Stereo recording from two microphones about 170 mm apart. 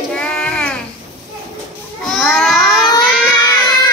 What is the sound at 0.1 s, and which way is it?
Child singing, 5° left (ahead or behind).